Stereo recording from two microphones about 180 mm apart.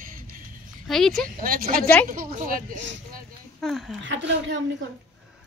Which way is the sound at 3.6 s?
Centre (ahead or behind).